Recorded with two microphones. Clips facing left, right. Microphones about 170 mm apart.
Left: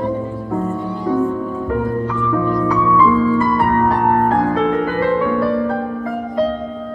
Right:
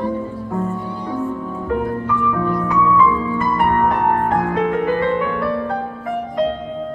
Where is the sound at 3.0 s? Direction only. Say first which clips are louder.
Left 4 dB; 25° right (ahead or behind).